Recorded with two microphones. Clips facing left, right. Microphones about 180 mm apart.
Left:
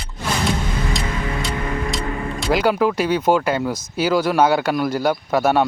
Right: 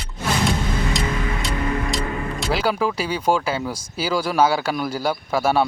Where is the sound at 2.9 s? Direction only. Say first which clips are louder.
Left 4 dB; 10° right (ahead or behind).